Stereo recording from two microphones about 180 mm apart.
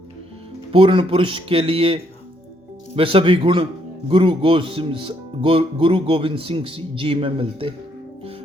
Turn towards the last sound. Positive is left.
turn(degrees=-30)  # may be behind; listen again after turning